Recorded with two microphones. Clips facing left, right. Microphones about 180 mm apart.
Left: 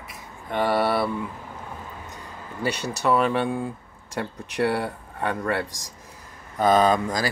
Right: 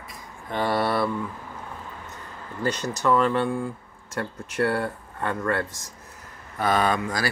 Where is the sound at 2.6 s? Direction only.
10° left (ahead or behind).